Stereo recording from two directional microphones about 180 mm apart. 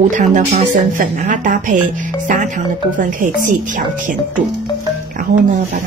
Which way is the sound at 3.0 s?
45° right (ahead or behind).